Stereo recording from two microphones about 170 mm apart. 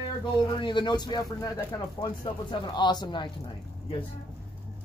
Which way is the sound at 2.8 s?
25° left (ahead or behind).